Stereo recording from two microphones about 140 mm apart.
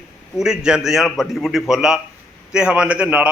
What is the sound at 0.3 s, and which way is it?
A man's voice, 5° right (ahead or behind).